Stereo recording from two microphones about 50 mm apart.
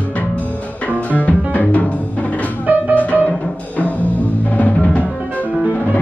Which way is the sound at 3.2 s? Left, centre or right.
Left.